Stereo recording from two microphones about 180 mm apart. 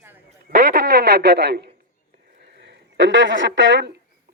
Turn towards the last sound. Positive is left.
turn(degrees=-85)